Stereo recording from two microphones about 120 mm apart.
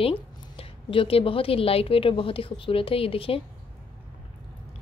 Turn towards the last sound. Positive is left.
turn(degrees=50)  # may be behind; listen again after turning